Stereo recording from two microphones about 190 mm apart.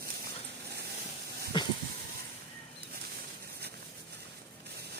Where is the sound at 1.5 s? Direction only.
25° left (ahead or behind).